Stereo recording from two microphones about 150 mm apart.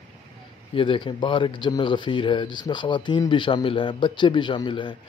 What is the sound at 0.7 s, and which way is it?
Speech, 35° left (ahead or behind).